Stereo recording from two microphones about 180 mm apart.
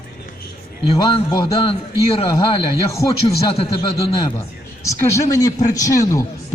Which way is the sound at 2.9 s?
15° left (ahead or behind).